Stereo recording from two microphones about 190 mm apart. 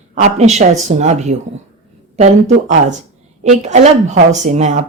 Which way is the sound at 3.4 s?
35° right (ahead or behind).